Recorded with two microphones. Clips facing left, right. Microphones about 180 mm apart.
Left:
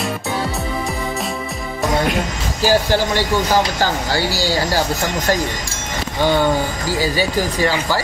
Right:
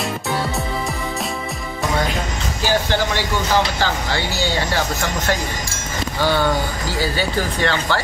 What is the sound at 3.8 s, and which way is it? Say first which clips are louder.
Speech: left 3 dB; 40° left (ahead or behind).